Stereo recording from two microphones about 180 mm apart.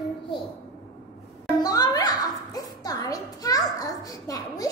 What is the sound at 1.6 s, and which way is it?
A child's voice, 20° left (ahead or behind).